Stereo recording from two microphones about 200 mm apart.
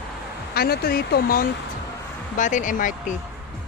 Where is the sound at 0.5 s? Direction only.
50° left (ahead or behind).